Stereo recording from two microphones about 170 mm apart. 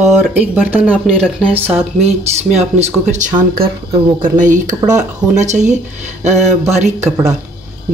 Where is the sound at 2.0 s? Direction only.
40° right (ahead or behind).